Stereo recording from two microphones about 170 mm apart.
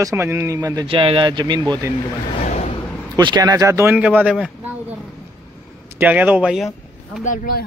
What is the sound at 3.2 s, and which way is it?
Speech, 25° right (ahead or behind).